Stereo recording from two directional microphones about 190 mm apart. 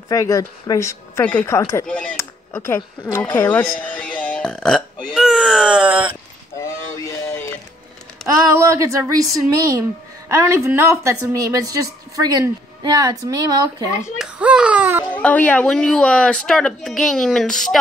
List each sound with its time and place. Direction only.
0.1 s speech: 20° left (ahead or behind)
1.9 s speech: 5° left (ahead or behind)
5.1 s a sound: 5° right (ahead or behind)
8.2 s a sound: centre (ahead or behind)
8.5 s a woman's voice: 15° right (ahead or behind)
14.0 s baby cry: 5° right (ahead or behind)
15.0 s speech: 10° left (ahead or behind)